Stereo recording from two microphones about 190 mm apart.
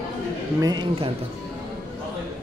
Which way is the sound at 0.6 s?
20° right (ahead or behind).